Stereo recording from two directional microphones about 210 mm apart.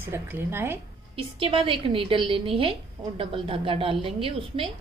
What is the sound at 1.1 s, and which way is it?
A woman's voice, 25° right (ahead or behind).